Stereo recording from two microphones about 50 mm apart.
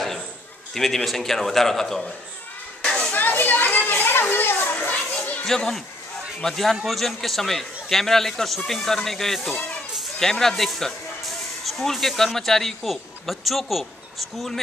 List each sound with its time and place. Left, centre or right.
0.7 s a man's voice: centre
2.8 s children playing: centre
3.1 s children playing: left
5.5 s a man's voice: centre